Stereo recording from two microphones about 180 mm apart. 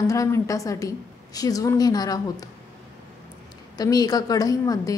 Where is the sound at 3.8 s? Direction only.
20° left (ahead or behind).